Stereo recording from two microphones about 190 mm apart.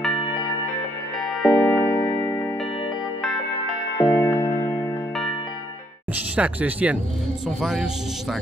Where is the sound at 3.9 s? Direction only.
10° left (ahead or behind).